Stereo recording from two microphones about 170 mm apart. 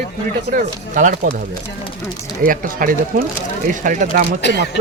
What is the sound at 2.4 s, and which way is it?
Speech, 55° right (ahead or behind).